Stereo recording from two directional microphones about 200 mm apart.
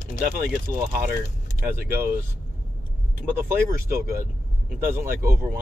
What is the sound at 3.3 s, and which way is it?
Speech, 15° right (ahead or behind).